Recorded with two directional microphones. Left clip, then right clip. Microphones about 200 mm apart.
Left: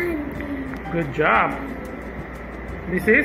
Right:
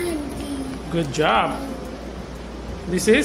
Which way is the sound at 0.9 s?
35° right (ahead or behind).